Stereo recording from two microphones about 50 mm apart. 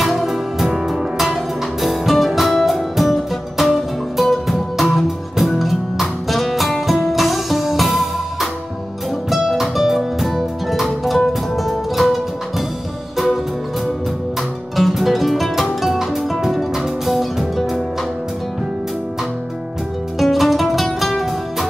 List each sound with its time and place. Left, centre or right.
0.0 s music: centre
14.8 s music: centre
20.2 s music: centre